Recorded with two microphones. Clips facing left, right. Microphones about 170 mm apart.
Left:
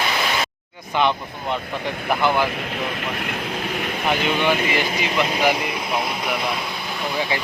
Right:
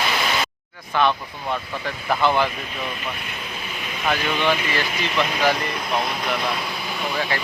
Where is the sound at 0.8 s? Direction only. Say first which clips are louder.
Even; 20° left (ahead or behind).